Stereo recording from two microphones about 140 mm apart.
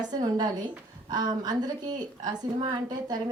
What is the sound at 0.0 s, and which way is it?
A woman's voice, 30° right (ahead or behind).